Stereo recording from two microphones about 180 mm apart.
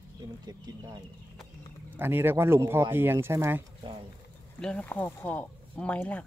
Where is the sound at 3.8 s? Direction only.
30° right (ahead or behind).